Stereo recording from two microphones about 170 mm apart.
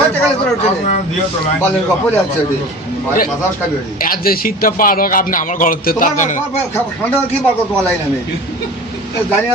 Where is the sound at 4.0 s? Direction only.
55° left (ahead or behind).